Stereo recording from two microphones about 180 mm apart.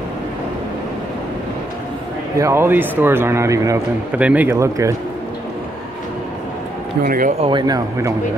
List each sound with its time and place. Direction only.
2.3 s a man's voice: 15° right (ahead or behind)
7.0 s speech: 50° right (ahead or behind)
7.4 s speech: 25° right (ahead or behind)